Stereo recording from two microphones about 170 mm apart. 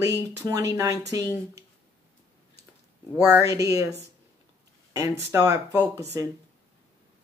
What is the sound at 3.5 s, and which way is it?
Speech, 20° right (ahead or behind).